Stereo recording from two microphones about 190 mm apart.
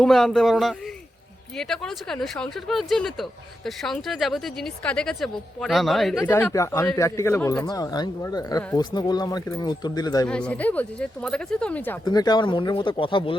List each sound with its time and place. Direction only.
0.0 s speech: 5° left (ahead or behind); by 10.2 s 20° left (ahead or behind)
10.2 s speech: 5° left (ahead or behind)
12.0 s speech: 20° left (ahead or behind)